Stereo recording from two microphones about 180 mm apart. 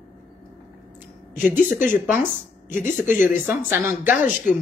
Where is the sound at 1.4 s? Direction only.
10° right (ahead or behind).